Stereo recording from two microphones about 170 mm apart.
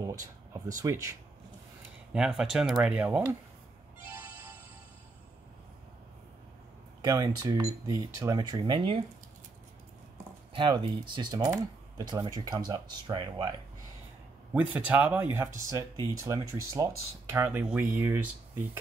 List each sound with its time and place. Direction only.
0.0 s speech: 20° right (ahead or behind)
2.1 s speech: centre (ahead or behind)
4.0 s music: 10° right (ahead or behind)
7.0 s speech: 20° right (ahead or behind)
10.5 s speech: 30° right (ahead or behind)
14.5 s speech: 10° right (ahead or behind)